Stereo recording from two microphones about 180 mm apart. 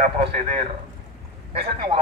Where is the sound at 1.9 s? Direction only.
30° right (ahead or behind).